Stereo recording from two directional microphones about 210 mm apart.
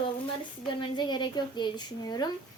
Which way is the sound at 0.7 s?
20° left (ahead or behind).